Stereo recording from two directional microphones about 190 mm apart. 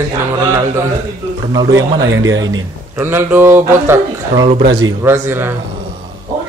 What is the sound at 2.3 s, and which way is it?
Speech, 90° right.